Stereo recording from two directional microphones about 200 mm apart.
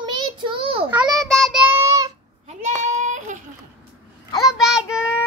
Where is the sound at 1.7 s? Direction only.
15° right (ahead or behind).